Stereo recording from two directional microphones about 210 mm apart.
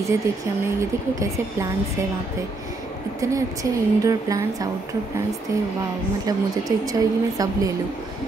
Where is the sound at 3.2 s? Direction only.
15° right (ahead or behind).